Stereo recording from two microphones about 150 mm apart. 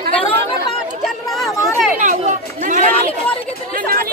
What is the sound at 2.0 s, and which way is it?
Chatter, 60° right (ahead or behind).